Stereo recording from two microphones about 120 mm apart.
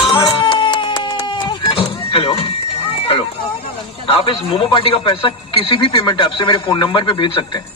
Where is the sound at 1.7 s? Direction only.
50° left (ahead or behind).